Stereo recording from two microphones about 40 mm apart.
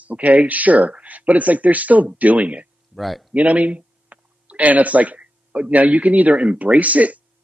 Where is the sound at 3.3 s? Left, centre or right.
Right.